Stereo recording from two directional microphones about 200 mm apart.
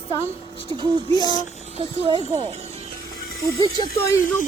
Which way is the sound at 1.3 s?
25° right (ahead or behind).